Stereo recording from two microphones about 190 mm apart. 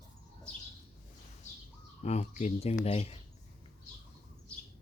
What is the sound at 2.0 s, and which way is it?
Speech, 35° left (ahead or behind).